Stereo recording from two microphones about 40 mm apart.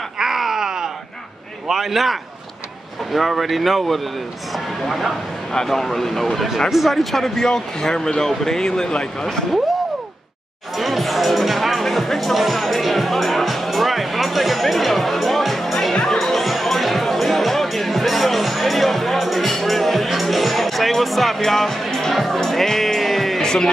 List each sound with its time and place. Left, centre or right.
0.2 s groan: centre
1.7 s speech: centre
5.5 s speech: centre
10.8 s music: centre
23.4 s music: centre